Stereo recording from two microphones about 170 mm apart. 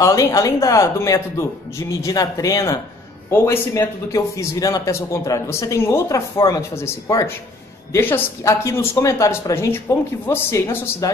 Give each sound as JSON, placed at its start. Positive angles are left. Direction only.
{"t": 0.0, "sound": "a man's voice", "side_deg": 20}